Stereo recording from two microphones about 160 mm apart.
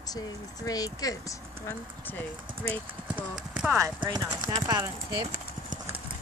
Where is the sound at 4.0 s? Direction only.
25° right (ahead or behind).